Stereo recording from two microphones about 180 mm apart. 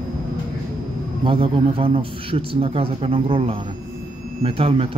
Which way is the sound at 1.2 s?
30° right (ahead or behind).